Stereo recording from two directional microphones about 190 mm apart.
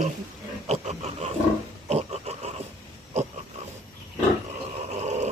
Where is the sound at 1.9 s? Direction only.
35° right (ahead or behind).